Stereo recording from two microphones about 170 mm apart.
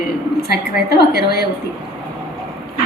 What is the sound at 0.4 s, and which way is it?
A woman's voice, 65° left (ahead or behind).